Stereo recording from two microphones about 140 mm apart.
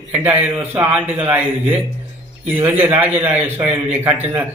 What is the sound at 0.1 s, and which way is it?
Speech, 10° right (ahead or behind).